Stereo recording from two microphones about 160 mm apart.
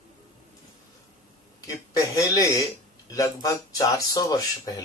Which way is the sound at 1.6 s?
20° left (ahead or behind).